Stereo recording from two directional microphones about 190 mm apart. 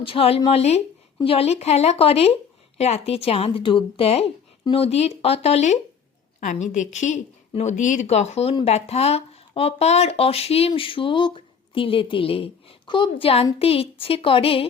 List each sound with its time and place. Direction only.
0.0 s a woman's voice: 30° left (ahead or behind)